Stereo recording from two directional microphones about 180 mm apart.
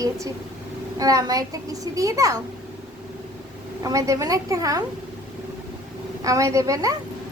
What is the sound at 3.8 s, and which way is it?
A woman's voice, 20° right (ahead or behind).